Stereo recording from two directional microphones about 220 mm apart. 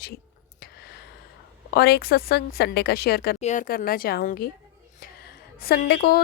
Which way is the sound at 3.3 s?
35° left (ahead or behind).